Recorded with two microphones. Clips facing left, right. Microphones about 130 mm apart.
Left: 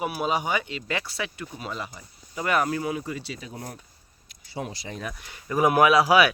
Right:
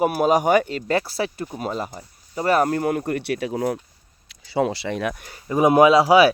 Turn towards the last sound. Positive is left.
turn(degrees=-25)  # may be behind; listen again after turning